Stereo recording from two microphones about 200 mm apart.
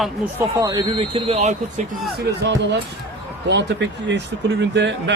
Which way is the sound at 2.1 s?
60° right (ahead or behind).